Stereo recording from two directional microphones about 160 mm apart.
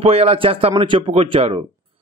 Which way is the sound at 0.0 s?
40° right (ahead or behind).